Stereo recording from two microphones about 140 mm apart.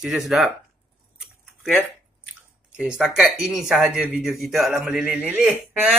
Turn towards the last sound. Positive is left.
turn(degrees=-5)  # may be behind; listen again after turning